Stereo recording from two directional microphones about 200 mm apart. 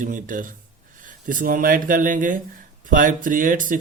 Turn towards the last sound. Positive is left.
turn(degrees=-45)  # may be behind; listen again after turning